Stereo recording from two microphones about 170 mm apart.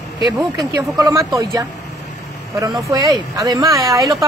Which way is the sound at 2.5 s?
20° right (ahead or behind).